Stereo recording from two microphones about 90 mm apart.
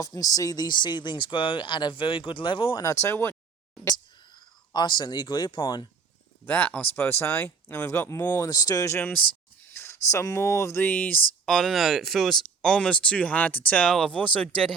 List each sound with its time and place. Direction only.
0.0 s speech: 40° left (ahead or behind); by 2.7 s 65° left (ahead or behind)
2.7 s speech: 35° left (ahead or behind)
4.2 s speech: 60° left (ahead or behind)
6.4 s speech: 15° left (ahead or behind)
8.4 s speech: 40° left (ahead or behind)
9.0 s speech: 20° left (ahead or behind)
9.7 s speech: 30° left (ahead or behind)
11.4 s speech: 5° left (ahead or behind)